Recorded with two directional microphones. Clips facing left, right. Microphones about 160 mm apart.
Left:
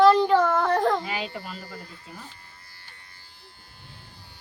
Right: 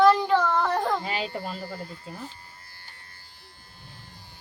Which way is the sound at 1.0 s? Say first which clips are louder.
Right 2 dB; 30° right (ahead or behind).